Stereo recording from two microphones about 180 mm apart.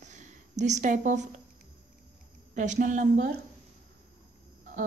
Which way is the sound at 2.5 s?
45° right (ahead or behind).